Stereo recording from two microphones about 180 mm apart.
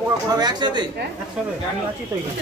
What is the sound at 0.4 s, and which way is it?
Speech, 25° right (ahead or behind).